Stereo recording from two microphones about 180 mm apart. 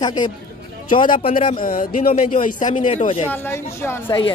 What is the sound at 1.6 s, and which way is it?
Speech, 50° left (ahead or behind).